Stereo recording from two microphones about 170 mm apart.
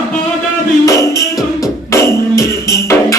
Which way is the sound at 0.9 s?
20° left (ahead or behind).